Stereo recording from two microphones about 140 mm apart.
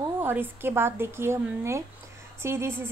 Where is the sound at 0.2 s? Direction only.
15° right (ahead or behind).